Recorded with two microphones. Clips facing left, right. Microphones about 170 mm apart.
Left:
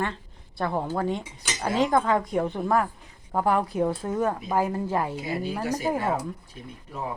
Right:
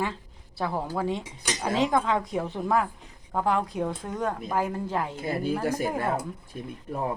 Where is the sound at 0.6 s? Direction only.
5° right (ahead or behind).